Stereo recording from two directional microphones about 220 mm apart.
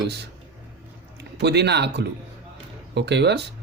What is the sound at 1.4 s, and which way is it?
A man's voice, 50° right (ahead or behind).